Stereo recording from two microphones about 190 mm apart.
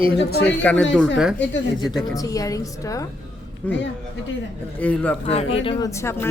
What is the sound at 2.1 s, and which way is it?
A woman's voice, 20° left (ahead or behind).